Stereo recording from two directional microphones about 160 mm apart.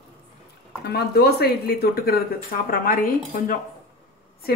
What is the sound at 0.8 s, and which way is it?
Speech, 80° left.